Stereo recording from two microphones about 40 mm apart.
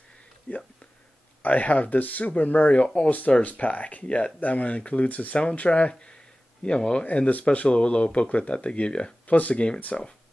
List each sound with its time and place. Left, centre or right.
0.5 s speech: left
7.1 s speech: left
7.4 s speech: left
9.2 s speech: left